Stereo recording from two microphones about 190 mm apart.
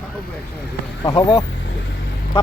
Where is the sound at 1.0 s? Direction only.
20° left (ahead or behind).